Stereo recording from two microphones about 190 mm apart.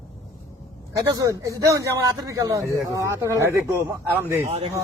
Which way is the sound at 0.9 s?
15° right (ahead or behind).